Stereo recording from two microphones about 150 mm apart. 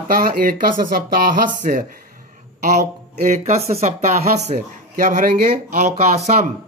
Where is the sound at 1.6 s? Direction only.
65° right (ahead or behind).